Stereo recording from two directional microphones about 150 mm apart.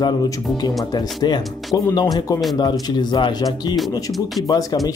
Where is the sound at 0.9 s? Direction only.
30° left (ahead or behind).